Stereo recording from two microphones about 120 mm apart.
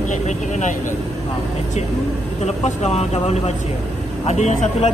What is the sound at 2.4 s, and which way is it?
Speech, 65° left (ahead or behind).